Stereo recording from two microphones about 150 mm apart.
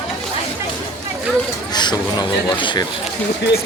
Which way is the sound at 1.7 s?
30° left (ahead or behind).